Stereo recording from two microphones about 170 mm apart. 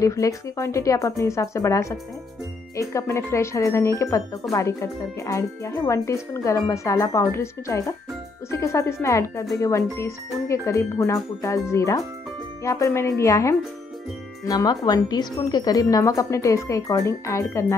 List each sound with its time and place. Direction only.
0.0 s a woman's voice: 20° left (ahead or behind)